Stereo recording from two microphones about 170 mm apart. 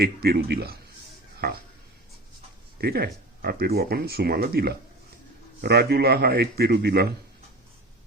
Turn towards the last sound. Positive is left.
turn(degrees=-70)  # may be behind; listen again after turning